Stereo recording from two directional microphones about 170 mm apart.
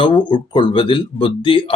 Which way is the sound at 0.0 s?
30° left (ahead or behind).